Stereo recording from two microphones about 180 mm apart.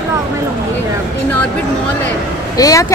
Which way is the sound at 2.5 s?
20° left (ahead or behind).